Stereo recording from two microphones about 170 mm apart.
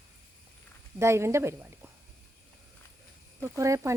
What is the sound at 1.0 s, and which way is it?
Speech, 15° right (ahead or behind).